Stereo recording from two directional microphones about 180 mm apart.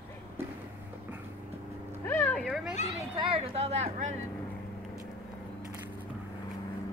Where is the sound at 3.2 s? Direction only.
30° right (ahead or behind).